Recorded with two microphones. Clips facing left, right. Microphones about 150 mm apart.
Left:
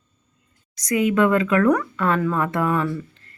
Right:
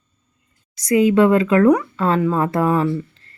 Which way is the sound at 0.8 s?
30° right (ahead or behind).